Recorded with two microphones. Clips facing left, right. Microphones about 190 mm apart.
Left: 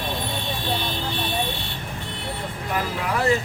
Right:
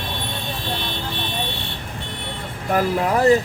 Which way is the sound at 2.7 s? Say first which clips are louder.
Right 7 dB; 45° right (ahead or behind).